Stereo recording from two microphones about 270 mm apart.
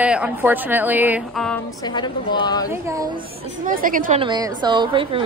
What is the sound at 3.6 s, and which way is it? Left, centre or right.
Speech, right.